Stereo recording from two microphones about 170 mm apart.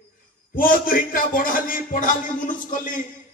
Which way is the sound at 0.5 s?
55° left (ahead or behind).